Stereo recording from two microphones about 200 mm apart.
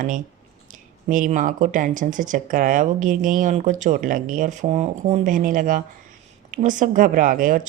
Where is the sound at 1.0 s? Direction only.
40° right (ahead or behind).